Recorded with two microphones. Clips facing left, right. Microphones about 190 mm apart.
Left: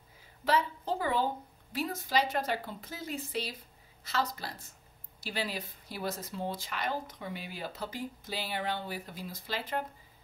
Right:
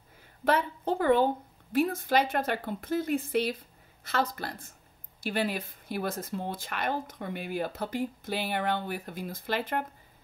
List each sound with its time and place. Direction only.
0.5 s speech: 55° right (ahead or behind)